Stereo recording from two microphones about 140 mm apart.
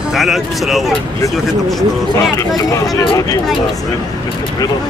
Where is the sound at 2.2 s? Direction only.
20° left (ahead or behind).